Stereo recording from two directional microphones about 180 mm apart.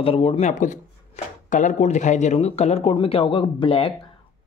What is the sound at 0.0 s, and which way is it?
Speech, 35° left (ahead or behind).